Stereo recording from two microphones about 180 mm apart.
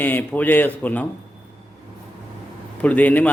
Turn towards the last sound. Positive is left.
turn(degrees=10)  # may be behind; listen again after turning